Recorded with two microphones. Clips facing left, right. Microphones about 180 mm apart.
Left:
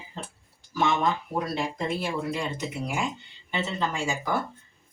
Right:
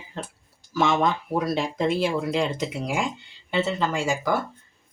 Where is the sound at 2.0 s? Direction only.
90° right.